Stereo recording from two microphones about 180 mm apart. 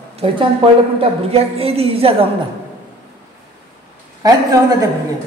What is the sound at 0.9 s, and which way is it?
Speech, 35° right (ahead or behind).